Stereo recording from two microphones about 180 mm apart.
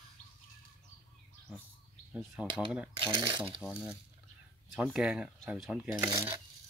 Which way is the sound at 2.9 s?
25° right (ahead or behind).